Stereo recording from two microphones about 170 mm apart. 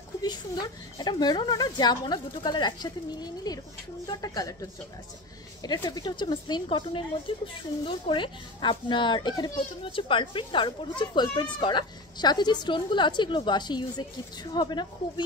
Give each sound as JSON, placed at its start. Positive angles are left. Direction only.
{"t": 0.2, "sound": "speech", "side_deg": 25}